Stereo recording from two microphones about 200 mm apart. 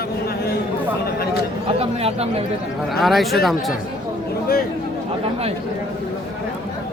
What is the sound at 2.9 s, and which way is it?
Speech, centre (ahead or behind).